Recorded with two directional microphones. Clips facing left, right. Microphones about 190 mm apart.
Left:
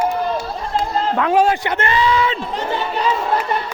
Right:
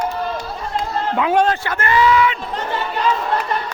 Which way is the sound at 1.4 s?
15° left (ahead or behind).